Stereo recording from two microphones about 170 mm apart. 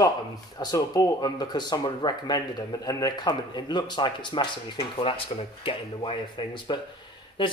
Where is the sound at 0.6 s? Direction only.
25° left (ahead or behind).